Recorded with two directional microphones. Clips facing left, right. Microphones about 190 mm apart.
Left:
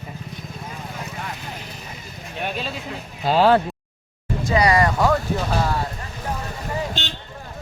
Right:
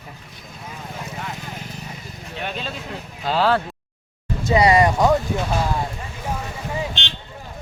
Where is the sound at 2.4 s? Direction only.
10° left (ahead or behind).